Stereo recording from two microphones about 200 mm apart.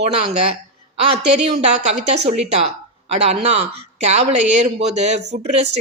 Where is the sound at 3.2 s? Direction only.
30° right (ahead or behind).